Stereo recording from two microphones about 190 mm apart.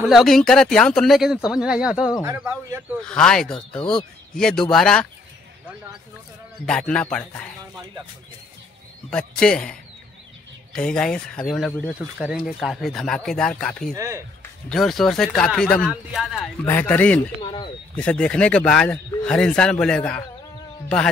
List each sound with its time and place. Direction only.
0.0 s speech: centre (ahead or behind)
3.0 s speech: 5° left (ahead or behind)
6.6 s speech: 5° left (ahead or behind)
9.1 s speech: 5° left (ahead or behind)
13.9 s speech: 15° right (ahead or behind)
14.4 s speech: 5° left (ahead or behind)
16.6 s speech: 10° left (ahead or behind)
17.4 s speech: 25° left (ahead or behind)
17.9 s speech: 5° left (ahead or behind)